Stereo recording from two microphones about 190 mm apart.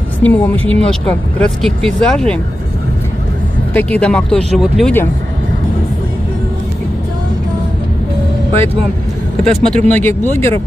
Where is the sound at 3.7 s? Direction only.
10° left (ahead or behind).